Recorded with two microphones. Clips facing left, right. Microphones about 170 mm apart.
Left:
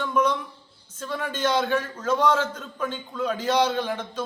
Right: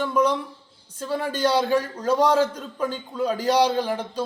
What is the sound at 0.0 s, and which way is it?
A man's voice, 35° right (ahead or behind).